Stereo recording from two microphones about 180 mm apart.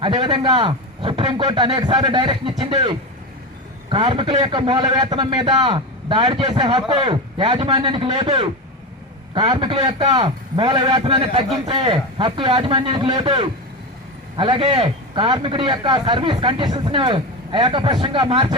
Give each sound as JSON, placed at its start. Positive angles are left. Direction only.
{"t": 0.0, "sound": "a man's voice", "side_deg": -25}